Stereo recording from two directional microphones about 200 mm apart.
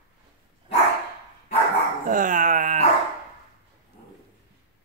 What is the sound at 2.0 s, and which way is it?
Dog, 40° right (ahead or behind).